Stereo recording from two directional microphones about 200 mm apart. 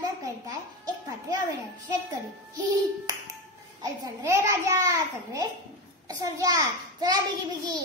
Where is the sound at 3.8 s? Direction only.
15° right (ahead or behind).